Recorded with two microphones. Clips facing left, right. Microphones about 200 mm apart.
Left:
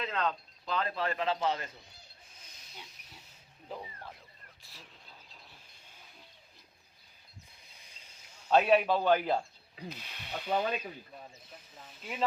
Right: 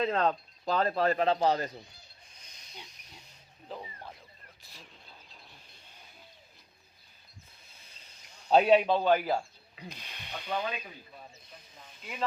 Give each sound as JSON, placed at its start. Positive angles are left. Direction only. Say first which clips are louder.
{"t": 0.0, "sound": "a man's voice", "louder": "right 6 dB", "side_deg": -35}
{"t": 2.3, "sound": "snake", "louder": "even", "side_deg": 5}
{"t": 2.8, "sound": "wild animals", "louder": "right 1 dB", "side_deg": 0}
{"t": 4.6, "sound": "a sound", "louder": "right 1 dB", "side_deg": 0}
{"t": 7.7, "sound": "a sound", "louder": "right 1 dB", "side_deg": 15}
{"t": 8.4, "sound": "a man's voice", "louder": "right 3 dB", "side_deg": -30}
{"t": 8.8, "sound": "a man's voice", "louder": "right 1 dB", "side_deg": -15}
{"t": 9.9, "sound": "ratchet", "louder": "left 2 dB", "side_deg": 5}
{"t": 11.5, "sound": "sizzle", "louder": "left 1 dB", "side_deg": 0}